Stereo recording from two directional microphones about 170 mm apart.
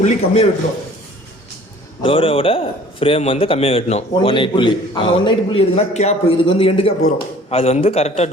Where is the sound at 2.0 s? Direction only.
30° left (ahead or behind).